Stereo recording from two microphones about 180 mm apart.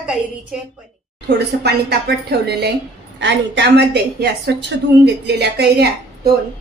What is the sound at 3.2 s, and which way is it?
A woman's voice, 75° right (ahead or behind).